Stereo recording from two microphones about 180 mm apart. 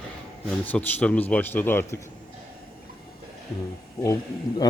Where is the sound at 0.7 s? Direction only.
10° left (ahead or behind).